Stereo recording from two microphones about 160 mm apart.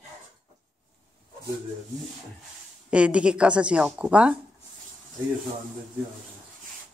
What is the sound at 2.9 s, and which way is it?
A woman's voice, 5° right (ahead or behind).